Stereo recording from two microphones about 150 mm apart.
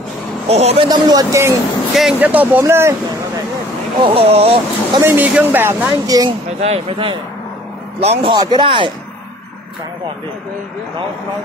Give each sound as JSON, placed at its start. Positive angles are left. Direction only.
{"t": 0.5, "sound": "a man's voice", "side_deg": -45}
{"t": 0.8, "sound": "speech", "side_deg": -25}
{"t": 2.0, "sound": "speech", "side_deg": -10}
{"t": 4.0, "sound": "speech", "side_deg": -40}
{"t": 5.0, "sound": "speech", "side_deg": -10}
{"t": 6.0, "sound": "speech", "side_deg": -25}
{"t": 6.6, "sound": "a man's voice", "side_deg": -40}
{"t": 8.3, "sound": "speech", "side_deg": -30}